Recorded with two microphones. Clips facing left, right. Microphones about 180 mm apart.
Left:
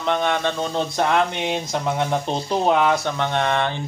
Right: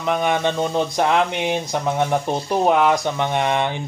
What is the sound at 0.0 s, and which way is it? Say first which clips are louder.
Speech: right 1 dB; 5° right (ahead or behind).